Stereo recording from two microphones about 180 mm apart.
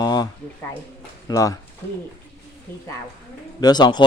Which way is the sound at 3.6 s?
25° left (ahead or behind).